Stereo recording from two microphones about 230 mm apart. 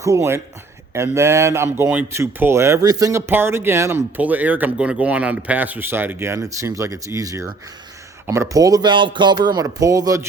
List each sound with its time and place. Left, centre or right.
0.0 s speech: centre